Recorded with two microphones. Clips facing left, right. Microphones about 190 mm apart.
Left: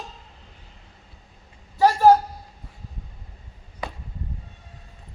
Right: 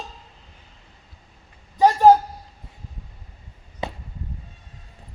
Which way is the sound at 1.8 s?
20° right (ahead or behind).